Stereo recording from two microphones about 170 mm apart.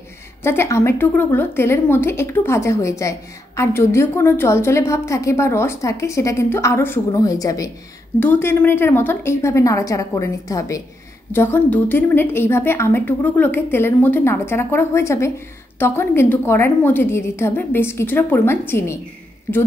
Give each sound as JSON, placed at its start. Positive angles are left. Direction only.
{"t": 0.4, "sound": "a woman's voice", "side_deg": 15}